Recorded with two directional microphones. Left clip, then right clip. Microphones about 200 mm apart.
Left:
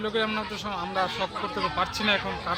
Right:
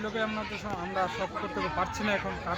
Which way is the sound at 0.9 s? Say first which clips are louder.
Left 3 dB; centre (ahead or behind).